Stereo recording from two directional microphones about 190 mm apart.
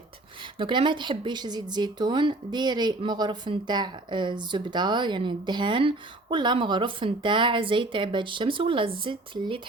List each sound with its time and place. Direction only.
0.6 s speech: 25° right (ahead or behind)